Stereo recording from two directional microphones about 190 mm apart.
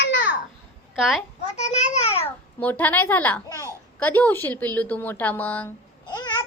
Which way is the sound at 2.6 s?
10° left (ahead or behind).